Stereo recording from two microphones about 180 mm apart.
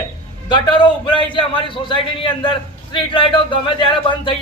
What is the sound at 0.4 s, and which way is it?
A man's voice, 25° left (ahead or behind).